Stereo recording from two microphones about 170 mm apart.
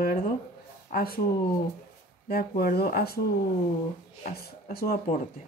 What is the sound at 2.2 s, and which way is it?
Speech, 65° left (ahead or behind).